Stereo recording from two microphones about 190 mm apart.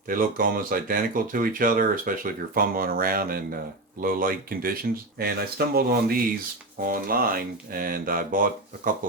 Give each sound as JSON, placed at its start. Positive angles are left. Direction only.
{"t": 0.1, "sound": "speech", "side_deg": -45}